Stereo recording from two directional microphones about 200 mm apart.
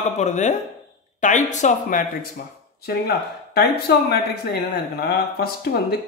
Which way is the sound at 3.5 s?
50° left (ahead or behind).